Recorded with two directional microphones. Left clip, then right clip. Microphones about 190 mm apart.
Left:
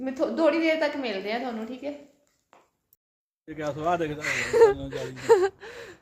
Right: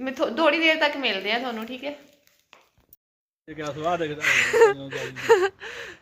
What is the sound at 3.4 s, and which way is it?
Speech, 40° right (ahead or behind).